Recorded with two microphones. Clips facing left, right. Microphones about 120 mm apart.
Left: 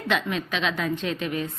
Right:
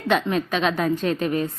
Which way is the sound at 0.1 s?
40° right (ahead or behind).